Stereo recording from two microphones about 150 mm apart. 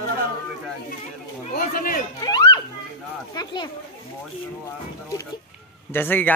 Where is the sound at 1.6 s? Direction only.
65° left (ahead or behind).